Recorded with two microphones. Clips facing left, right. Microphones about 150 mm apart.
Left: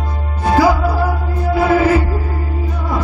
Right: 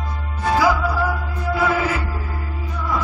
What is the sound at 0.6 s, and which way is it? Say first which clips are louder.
Music: left 5 dB; 35° left (ahead or behind).